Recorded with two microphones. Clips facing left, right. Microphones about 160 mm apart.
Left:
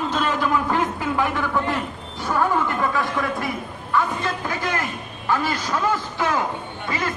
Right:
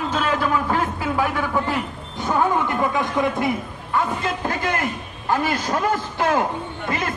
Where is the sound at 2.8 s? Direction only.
20° right (ahead or behind).